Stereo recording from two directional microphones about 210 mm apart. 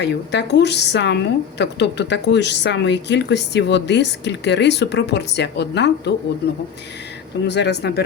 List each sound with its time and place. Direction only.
0.0 s a woman's voice: 55° left (ahead or behind)
7.4 s a woman's voice: 55° left (ahead or behind)